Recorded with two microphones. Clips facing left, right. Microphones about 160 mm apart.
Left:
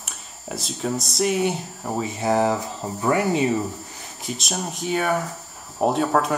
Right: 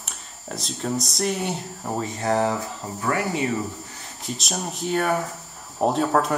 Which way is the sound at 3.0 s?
20° left (ahead or behind).